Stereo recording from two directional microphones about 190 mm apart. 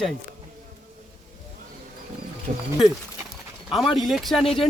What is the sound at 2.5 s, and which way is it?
Speech, 45° right (ahead or behind).